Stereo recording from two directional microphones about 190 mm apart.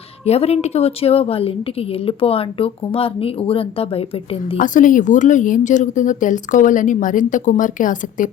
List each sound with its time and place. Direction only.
0.3 s a woman's voice: 35° left (ahead or behind)
4.6 s speech: 45° left (ahead or behind)